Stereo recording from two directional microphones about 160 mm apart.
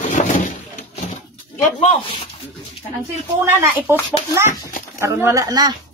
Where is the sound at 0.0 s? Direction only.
50° left (ahead or behind).